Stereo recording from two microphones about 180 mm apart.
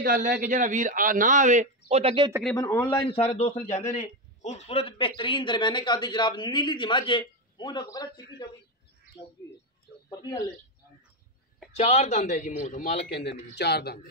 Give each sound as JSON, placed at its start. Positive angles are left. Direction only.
{"t": 0.0, "sound": "speech", "side_deg": -50}
{"t": 2.5, "sound": "a man's voice", "side_deg": 15}
{"t": 3.1, "sound": "a man's voice", "side_deg": 35}
{"t": 10.0, "sound": "speech", "side_deg": 15}
{"t": 11.7, "sound": "a man's voice", "side_deg": 35}
{"t": 13.1, "sound": "speech", "side_deg": 70}